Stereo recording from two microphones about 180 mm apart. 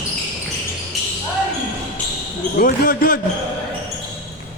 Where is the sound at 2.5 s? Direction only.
50° left (ahead or behind).